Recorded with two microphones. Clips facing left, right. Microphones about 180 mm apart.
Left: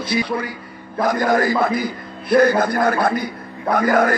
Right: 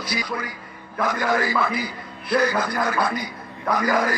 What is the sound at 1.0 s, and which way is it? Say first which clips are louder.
A man's voice: left 5 dB; 40° left (ahead or behind).